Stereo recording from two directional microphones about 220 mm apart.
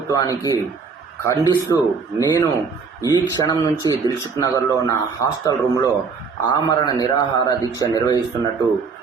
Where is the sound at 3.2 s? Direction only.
15° left (ahead or behind).